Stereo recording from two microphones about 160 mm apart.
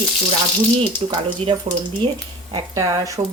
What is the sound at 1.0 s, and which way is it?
Speech, 40° right (ahead or behind).